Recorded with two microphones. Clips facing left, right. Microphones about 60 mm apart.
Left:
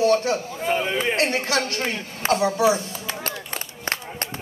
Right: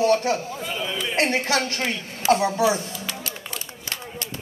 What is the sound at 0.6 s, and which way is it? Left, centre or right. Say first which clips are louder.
Speech: left 5 dB; left.